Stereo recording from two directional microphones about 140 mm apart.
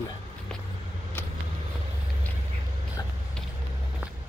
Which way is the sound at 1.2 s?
15° left (ahead or behind).